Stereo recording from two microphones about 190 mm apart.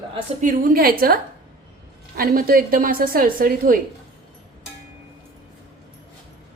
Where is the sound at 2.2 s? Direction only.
50° right (ahead or behind).